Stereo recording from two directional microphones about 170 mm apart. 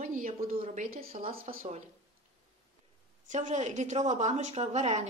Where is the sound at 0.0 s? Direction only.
50° right (ahead or behind).